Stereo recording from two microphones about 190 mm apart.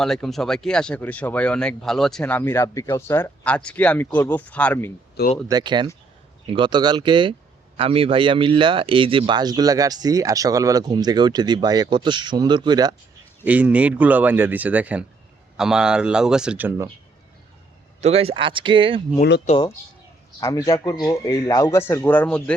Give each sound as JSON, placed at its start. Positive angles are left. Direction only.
{"t": 0.0, "sound": "speech", "side_deg": 0}
{"t": 5.5, "sound": "speech", "side_deg": -20}
{"t": 13.4, "sound": "speech", "side_deg": -10}
{"t": 18.0, "sound": "speech", "side_deg": -30}
{"t": 19.5, "sound": "speech", "side_deg": 35}
{"t": 20.4, "sound": "speech", "side_deg": 15}